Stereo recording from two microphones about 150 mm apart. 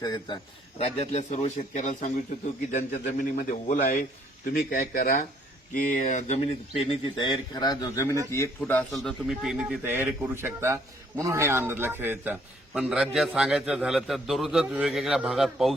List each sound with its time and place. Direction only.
0.0 s a man's voice: 30° left (ahead or behind)
0.8 s speech: 45° left (ahead or behind)
2.7 s a man's voice: 70° left (ahead or behind)
5.7 s speech: 60° left (ahead or behind); by 7.3 s 40° left (ahead or behind)
7.5 s a man's voice: 25° left (ahead or behind); by 15.7 s centre (ahead or behind)